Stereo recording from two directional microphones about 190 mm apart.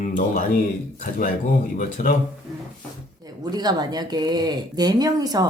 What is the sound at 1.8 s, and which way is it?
Speech, 45° left (ahead or behind).